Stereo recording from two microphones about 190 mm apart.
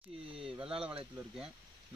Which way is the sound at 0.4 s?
30° right (ahead or behind).